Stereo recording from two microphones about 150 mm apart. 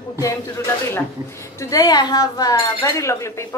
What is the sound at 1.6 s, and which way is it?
Speech, 25° left (ahead or behind).